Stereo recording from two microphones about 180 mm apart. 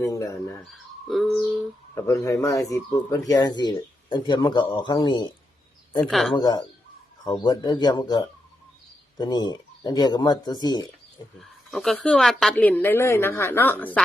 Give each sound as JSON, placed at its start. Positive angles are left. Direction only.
{"t": 0.0, "sound": "a woman's voice", "side_deg": 15}
{"t": 0.7, "sound": "speech", "side_deg": 0}
{"t": 2.0, "sound": "speech", "side_deg": 15}
{"t": 6.0, "sound": "speech", "side_deg": 0}
{"t": 6.3, "sound": "speech", "side_deg": 20}
{"t": 11.3, "sound": "a woman's voice", "side_deg": 0}